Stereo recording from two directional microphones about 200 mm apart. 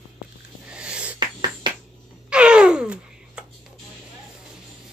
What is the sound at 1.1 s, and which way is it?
Music, 20° right (ahead or behind).